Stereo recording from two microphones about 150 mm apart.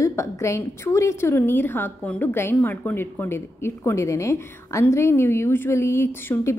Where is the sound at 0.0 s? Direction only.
20° left (ahead or behind).